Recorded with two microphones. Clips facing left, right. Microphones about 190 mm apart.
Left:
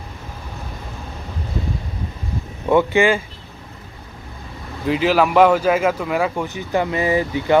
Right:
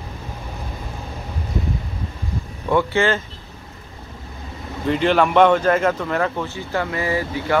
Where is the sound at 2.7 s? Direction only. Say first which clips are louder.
Left 3 dB; 15° left (ahead or behind).